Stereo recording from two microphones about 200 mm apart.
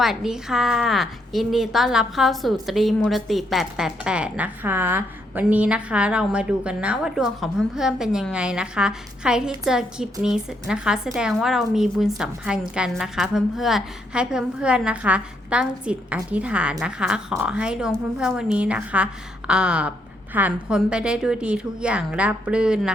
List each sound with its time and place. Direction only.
0.0 s a woman's voice: centre (ahead or behind)